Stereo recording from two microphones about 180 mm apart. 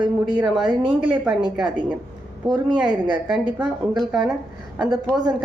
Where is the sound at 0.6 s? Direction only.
30° right (ahead or behind).